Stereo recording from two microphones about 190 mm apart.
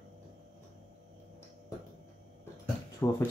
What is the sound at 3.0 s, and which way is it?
Speech, 15° left (ahead or behind).